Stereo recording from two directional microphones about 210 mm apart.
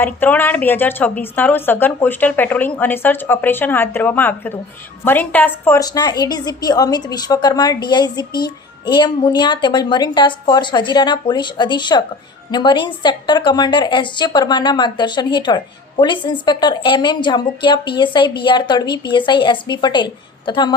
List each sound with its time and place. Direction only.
0.0 s a woman's voice: 10° left (ahead or behind)